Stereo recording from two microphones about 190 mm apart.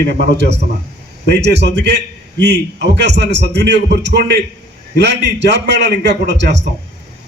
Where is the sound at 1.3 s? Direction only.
65° right (ahead or behind).